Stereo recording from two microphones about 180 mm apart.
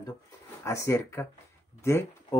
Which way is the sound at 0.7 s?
15° left (ahead or behind).